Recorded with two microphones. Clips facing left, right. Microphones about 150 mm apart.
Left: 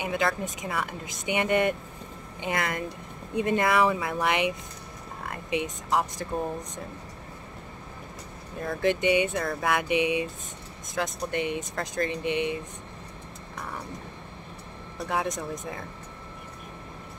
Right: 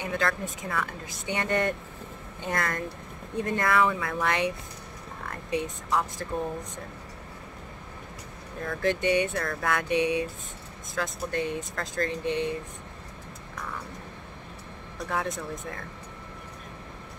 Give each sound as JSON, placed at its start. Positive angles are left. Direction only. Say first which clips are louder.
{"t": 0.0, "sound": "speech", "louder": "left 2 dB", "side_deg": 15}
{"t": 8.6, "sound": "speech", "louder": "left 2 dB", "side_deg": 15}
{"t": 15.0, "sound": "speech", "louder": "left 2 dB", "side_deg": 20}